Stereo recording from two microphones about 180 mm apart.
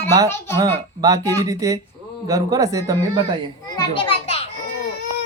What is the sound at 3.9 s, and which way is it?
Children playing, 30° left (ahead or behind).